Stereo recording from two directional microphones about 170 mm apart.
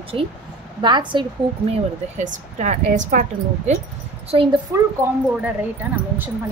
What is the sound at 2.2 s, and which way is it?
A woman's voice, 45° right (ahead or behind).